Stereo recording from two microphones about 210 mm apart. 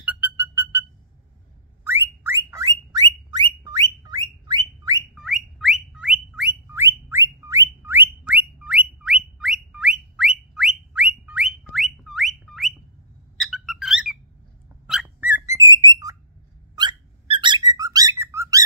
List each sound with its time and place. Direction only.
0.0 s a sound: 5° right (ahead or behind)
1.9 s car alarm: 10° right (ahead or behind)
5.1 s car alarm: centre (ahead or behind)
13.4 s bird: centre (ahead or behind); by 16.2 s 15° right (ahead or behind)
16.7 s whistling: 20° right (ahead or behind)